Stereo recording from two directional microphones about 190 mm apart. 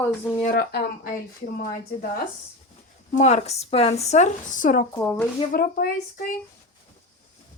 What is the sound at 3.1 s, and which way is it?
Speech, 35° left (ahead or behind).